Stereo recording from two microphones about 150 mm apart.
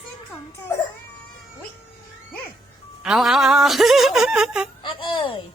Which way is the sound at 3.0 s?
5° right (ahead or behind).